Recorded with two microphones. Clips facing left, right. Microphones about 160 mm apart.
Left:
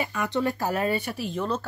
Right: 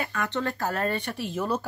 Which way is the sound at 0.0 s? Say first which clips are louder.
Left 3 dB; 10° left (ahead or behind).